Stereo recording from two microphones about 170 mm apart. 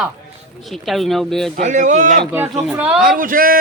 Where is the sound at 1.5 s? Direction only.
45° right (ahead or behind).